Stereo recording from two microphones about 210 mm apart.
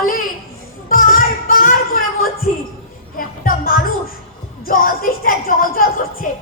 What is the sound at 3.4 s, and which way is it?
Music, 45° left (ahead or behind).